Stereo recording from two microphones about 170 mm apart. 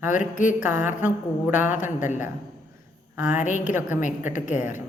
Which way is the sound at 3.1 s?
10° right (ahead or behind).